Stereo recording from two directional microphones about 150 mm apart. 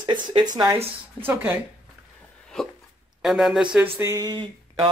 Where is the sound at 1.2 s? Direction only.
15° right (ahead or behind).